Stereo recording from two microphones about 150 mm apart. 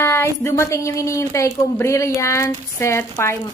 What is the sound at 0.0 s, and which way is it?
Speech, 15° left (ahead or behind).